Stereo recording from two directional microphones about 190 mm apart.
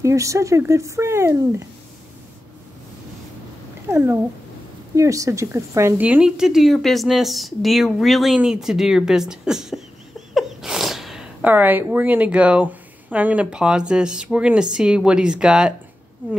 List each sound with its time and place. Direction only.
0.0 s speech: 15° right (ahead or behind)
3.9 s a woman's voice: 15° right (ahead or behind)